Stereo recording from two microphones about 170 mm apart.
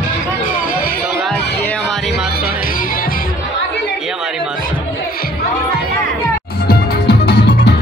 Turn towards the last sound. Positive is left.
turn(degrees=70)  # may be behind; listen again after turning